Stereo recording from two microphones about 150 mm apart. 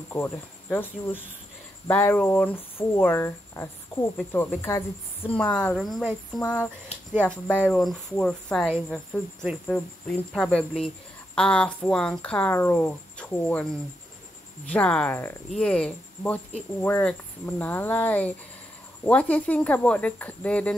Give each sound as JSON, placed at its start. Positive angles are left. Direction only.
{"t": 0.1, "sound": "speech", "side_deg": 15}
{"t": 9.7, "sound": "speech", "side_deg": 5}